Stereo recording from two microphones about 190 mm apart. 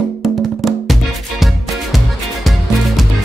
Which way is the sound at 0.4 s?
Centre (ahead or behind).